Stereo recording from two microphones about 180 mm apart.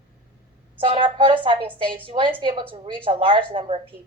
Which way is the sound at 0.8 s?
30° right (ahead or behind).